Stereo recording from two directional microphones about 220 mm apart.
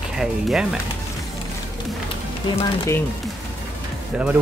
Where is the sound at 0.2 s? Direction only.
5° right (ahead or behind).